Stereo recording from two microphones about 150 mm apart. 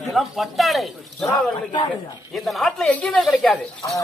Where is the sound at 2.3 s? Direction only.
Centre (ahead or behind).